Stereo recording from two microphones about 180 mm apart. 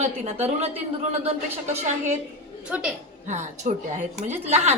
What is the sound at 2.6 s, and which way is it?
Speech, 5° right (ahead or behind).